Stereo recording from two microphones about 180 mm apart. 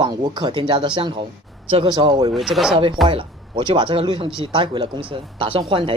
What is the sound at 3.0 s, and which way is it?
Speech, 25° right (ahead or behind).